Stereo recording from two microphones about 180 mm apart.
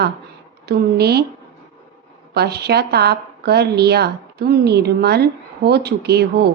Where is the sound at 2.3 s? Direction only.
65° right (ahead or behind).